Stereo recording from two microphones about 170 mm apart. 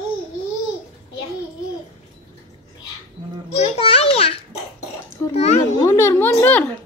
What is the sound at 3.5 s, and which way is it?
A child's voice, 40° left (ahead or behind).